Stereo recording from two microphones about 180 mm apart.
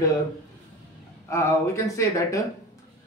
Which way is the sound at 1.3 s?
15° left (ahead or behind).